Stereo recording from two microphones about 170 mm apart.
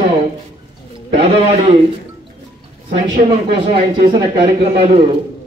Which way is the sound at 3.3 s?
35° right (ahead or behind).